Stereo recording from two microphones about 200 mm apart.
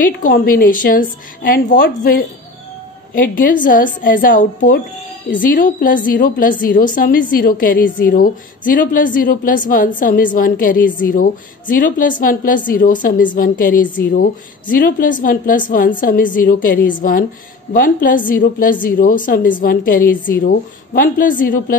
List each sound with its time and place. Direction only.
0.0 s a woman's voice: 45° left (ahead or behind)